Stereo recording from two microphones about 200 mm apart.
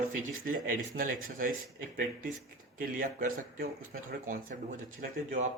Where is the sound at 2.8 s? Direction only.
45° right (ahead or behind).